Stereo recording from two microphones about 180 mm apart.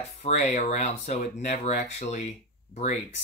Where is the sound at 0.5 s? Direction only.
40° left (ahead or behind).